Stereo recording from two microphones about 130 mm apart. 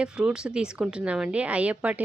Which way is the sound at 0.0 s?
5° right (ahead or behind).